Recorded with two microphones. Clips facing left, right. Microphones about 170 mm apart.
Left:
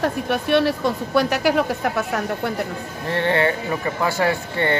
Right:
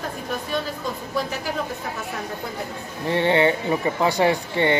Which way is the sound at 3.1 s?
15° right (ahead or behind).